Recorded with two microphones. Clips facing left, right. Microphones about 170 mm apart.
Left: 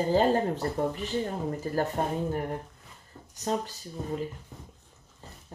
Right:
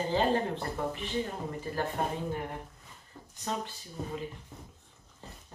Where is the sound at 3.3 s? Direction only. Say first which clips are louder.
Left 5 dB; 40° left (ahead or behind).